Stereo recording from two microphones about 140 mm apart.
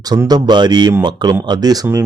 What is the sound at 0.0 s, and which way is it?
Speech, 30° right (ahead or behind).